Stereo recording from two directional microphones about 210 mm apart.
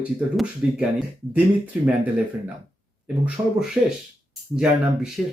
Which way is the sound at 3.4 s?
25° right (ahead or behind).